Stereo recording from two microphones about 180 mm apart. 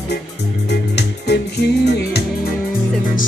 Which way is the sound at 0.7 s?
70° left (ahead or behind).